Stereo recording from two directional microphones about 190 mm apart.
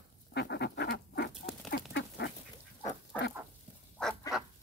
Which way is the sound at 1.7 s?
60° left (ahead or behind).